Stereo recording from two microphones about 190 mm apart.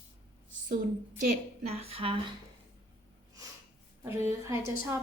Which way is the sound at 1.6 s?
30° right (ahead or behind).